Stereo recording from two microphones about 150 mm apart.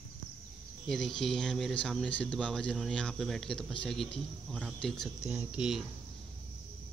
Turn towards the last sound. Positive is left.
turn(degrees=-5)  # may be behind; listen again after turning